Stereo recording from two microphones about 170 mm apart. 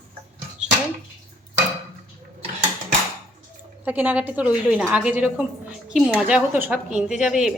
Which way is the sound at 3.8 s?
10° right (ahead or behind).